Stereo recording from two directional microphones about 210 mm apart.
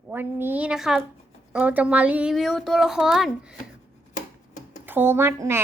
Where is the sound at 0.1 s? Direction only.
10° right (ahead or behind).